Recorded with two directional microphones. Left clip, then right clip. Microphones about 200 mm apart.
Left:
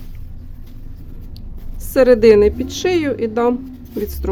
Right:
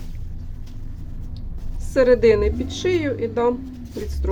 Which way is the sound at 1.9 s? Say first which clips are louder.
Left 5 dB; 50° left (ahead or behind).